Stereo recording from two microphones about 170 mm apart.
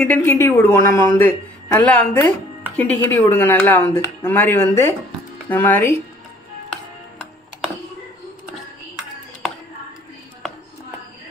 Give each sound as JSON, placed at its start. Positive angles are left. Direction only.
{"t": 0.0, "sound": "speech", "side_deg": 10}